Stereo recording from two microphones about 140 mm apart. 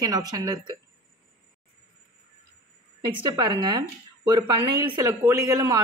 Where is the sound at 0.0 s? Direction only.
25° right (ahead or behind).